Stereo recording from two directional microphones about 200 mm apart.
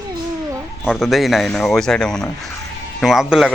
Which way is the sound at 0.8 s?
Centre (ahead or behind).